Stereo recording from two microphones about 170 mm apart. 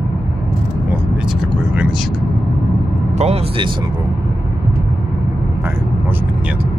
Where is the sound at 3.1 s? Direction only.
40° right (ahead or behind).